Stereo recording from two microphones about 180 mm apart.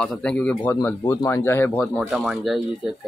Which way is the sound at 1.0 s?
20° left (ahead or behind).